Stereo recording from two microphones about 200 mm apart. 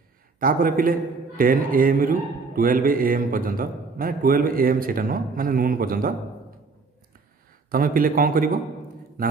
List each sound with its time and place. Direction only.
0.4 s a man's voice: 45° right (ahead or behind)
7.7 s a man's voice: 45° right (ahead or behind)